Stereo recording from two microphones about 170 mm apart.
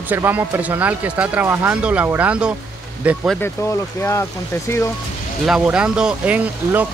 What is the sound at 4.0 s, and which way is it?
Speech, 15° left (ahead or behind).